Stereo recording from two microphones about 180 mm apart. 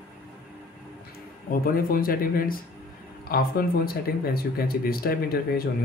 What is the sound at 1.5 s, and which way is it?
Speech, 50° left (ahead or behind).